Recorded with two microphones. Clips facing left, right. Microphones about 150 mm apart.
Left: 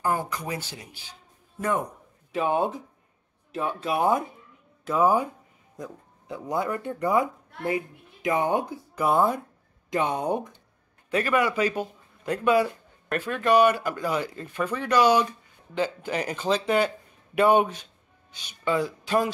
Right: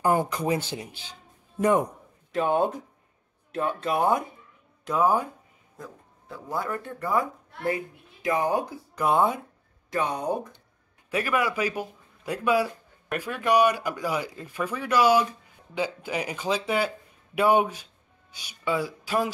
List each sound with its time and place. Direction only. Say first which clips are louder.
0.0 s speech: right 4 dB; 20° right (ahead or behind)
2.3 s speech: right 1 dB; centre (ahead or behind); by 8.7 s 25° left (ahead or behind)
8.9 s speech: even; centre (ahead or behind)
9.8 s speech: left 2 dB; 25° left (ahead or behind)
11.1 s speech: left 2 dB; 10° right (ahead or behind)